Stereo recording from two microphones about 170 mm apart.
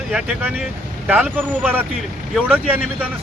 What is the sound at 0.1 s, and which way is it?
Speech, 5° right (ahead or behind).